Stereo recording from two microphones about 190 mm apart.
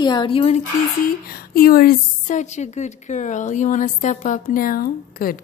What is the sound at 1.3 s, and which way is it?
A woman's voice, 55° left (ahead or behind).